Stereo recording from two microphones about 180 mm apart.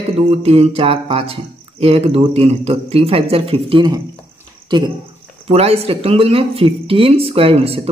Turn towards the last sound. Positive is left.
turn(degrees=-35)  # may be behind; listen again after turning